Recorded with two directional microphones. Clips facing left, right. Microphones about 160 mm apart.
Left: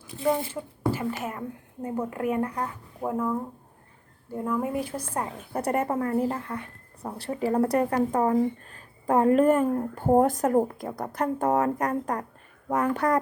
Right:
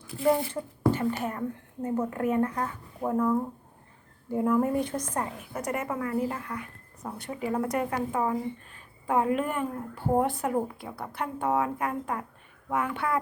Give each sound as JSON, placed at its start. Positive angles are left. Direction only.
{"t": 0.1, "sound": "a child's voice", "side_deg": 20}
{"t": 0.8, "sound": "whispering", "side_deg": 5}
{"t": 1.2, "sound": "speech", "side_deg": 10}
{"t": 4.3, "sound": "speech", "side_deg": -5}
{"t": 4.7, "sound": "speech", "side_deg": 5}
{"t": 5.5, "sound": "a woman's voice", "side_deg": 35}